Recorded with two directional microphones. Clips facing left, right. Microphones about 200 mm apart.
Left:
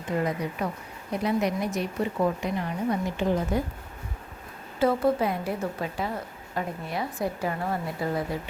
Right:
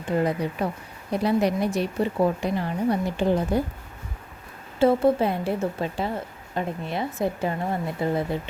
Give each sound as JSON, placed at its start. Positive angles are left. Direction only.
{"t": 0.6, "sound": "a woman's voice", "side_deg": -30}
{"t": 4.8, "sound": "a woman's voice", "side_deg": -25}